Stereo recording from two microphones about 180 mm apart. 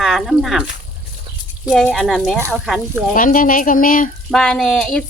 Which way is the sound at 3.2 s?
50° left (ahead or behind).